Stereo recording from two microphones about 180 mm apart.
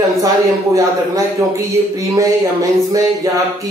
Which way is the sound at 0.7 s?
20° right (ahead or behind).